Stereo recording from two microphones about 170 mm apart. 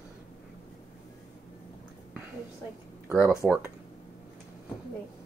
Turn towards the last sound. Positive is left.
turn(degrees=-10)  # may be behind; listen again after turning